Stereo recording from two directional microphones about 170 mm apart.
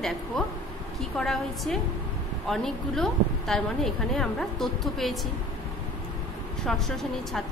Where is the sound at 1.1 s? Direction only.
5° left (ahead or behind).